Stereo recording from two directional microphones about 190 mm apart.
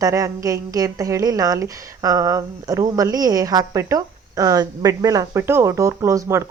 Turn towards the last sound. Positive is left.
turn(degrees=-15)  # may be behind; listen again after turning